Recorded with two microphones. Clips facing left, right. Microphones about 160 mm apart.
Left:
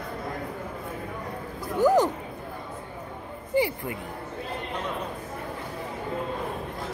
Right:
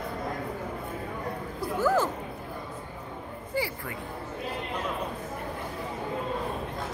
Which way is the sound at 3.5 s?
20° left (ahead or behind).